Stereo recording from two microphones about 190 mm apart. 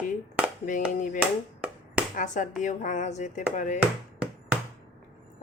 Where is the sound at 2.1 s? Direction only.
40° left (ahead or behind).